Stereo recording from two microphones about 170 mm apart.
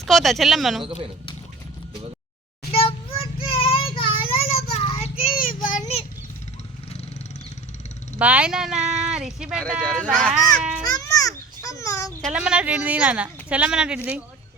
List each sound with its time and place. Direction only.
0.0 s speech: centre (ahead or behind)
0.9 s speech: 35° right (ahead or behind)
2.7 s child singing: 35° left (ahead or behind)
5.3 s child singing: 55° left (ahead or behind)
8.2 s speech: 5° right (ahead or behind)
10.8 s a sound: 20° left (ahead or behind)
12.2 s speech: 5° right (ahead or behind)